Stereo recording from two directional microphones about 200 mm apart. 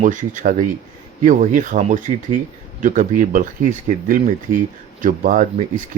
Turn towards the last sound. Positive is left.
turn(degrees=-40)  # may be behind; listen again after turning